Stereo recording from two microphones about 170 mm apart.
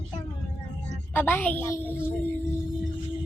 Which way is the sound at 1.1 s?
10° left (ahead or behind).